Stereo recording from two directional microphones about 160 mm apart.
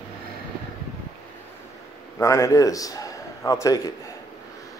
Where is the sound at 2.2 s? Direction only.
20° left (ahead or behind).